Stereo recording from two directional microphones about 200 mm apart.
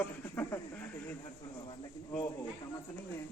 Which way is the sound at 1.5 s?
20° left (ahead or behind).